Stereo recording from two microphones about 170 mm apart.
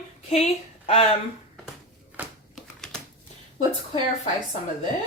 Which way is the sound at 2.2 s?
10° right (ahead or behind).